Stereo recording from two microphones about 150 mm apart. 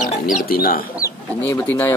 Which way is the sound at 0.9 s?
20° left (ahead or behind).